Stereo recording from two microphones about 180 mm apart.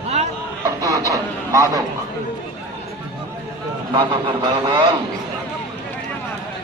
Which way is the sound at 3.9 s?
25° right (ahead or behind).